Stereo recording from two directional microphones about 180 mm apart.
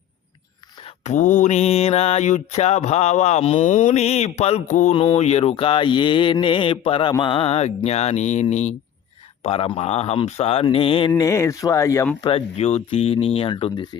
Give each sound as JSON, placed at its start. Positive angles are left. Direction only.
{"t": 0.8, "sound": "mantra", "side_deg": 35}
{"t": 11.1, "sound": "speech", "side_deg": 15}
{"t": 12.2, "sound": "mantra", "side_deg": 35}